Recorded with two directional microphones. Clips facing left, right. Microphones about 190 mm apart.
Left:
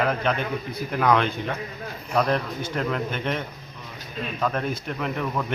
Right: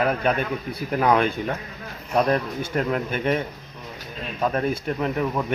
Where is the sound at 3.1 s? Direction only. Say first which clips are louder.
Right 5 dB; 10° right (ahead or behind).